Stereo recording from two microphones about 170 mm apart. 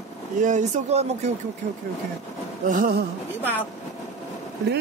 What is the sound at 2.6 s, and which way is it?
Speech, 55° right (ahead or behind).